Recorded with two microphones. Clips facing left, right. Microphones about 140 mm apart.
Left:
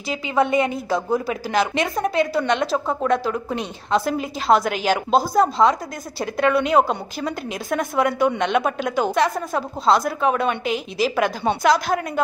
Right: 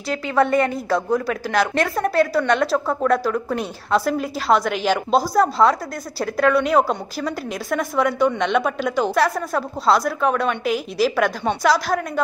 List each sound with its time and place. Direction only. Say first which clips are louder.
0.1 s a woman's voice: right 1 dB; 5° left (ahead or behind)
1.1 s speech: right 1 dB; 25° left (ahead or behind)
1.5 s a woman's voice: right 1 dB; centre (ahead or behind)